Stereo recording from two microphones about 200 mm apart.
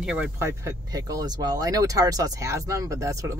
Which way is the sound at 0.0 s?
5° right (ahead or behind).